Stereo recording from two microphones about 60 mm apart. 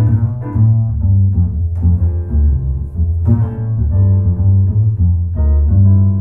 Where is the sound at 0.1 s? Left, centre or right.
Centre.